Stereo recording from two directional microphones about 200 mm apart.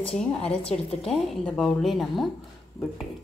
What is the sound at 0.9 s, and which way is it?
Speech, 30° left (ahead or behind).